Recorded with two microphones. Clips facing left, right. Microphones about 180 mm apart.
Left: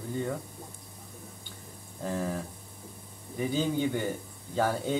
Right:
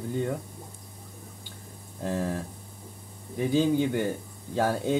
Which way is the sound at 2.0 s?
5° right (ahead or behind).